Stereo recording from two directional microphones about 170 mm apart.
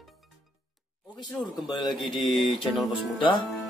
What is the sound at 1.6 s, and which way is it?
Speech, 25° left (ahead or behind).